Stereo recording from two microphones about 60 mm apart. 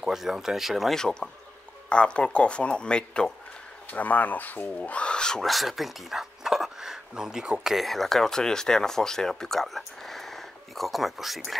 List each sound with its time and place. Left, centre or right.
0.0 s speech: centre
0.9 s speech: centre
3.9 s speech: left
5.5 s speech: centre
7.7 s speech: centre